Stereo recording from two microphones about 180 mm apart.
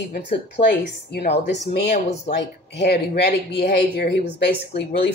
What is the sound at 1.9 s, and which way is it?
Speech, 40° left (ahead or behind).